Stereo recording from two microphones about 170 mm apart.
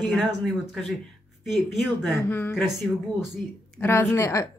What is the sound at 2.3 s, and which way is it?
Speech, 10° left (ahead or behind).